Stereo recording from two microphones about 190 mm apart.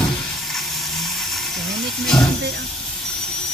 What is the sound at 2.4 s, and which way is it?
Vehicle, 65° right (ahead or behind).